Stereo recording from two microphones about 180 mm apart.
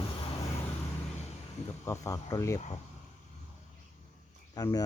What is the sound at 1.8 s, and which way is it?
Speech, 15° left (ahead or behind).